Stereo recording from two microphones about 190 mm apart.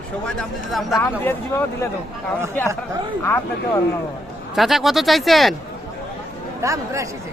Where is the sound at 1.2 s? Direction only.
10° left (ahead or behind).